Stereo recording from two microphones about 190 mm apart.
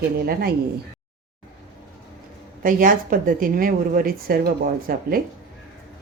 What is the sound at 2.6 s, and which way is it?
Speech, 45° right (ahead or behind).